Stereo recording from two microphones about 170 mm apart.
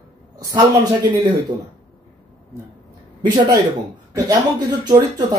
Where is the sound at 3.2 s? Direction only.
25° right (ahead or behind).